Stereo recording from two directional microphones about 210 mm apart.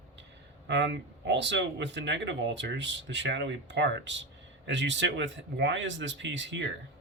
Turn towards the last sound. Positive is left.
turn(degrees=-60)  # may be behind; listen again after turning